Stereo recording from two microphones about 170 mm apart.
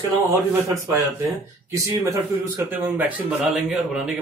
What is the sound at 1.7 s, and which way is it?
A man's voice, 20° right (ahead or behind).